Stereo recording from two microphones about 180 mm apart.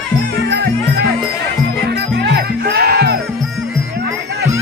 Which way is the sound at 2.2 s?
65° right (ahead or behind).